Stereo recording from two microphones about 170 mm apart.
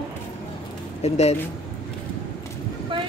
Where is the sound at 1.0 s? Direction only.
40° left (ahead or behind).